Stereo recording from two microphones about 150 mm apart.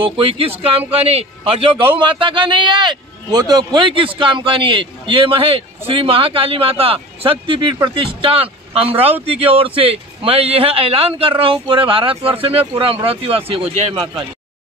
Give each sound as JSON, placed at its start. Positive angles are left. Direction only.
{"t": 0.0, "sound": "a man's voice", "side_deg": -40}